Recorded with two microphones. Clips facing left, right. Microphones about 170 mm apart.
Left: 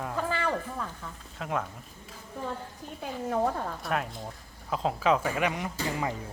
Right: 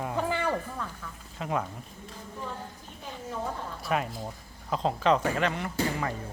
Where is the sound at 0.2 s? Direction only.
15° right (ahead or behind).